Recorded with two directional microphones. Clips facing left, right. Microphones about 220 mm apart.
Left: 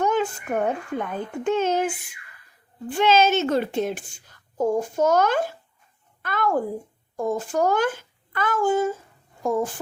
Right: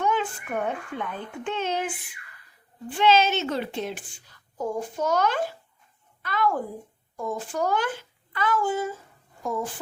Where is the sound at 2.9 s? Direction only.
45° left (ahead or behind).